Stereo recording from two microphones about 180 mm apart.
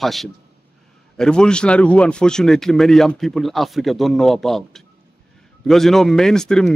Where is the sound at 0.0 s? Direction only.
Centre (ahead or behind).